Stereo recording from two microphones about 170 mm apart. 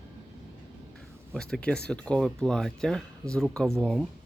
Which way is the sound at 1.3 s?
5° left (ahead or behind).